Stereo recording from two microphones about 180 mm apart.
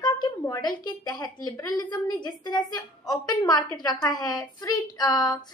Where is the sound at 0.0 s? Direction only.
20° left (ahead or behind).